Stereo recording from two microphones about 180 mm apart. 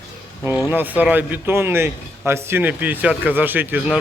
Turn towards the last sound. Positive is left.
turn(degrees=-10)  # may be behind; listen again after turning